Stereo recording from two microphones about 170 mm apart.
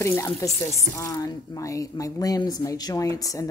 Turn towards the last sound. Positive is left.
turn(degrees=20)  # may be behind; listen again after turning